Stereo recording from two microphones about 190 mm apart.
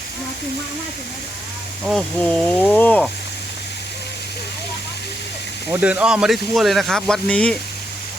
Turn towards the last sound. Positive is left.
turn(degrees=5)  # may be behind; listen again after turning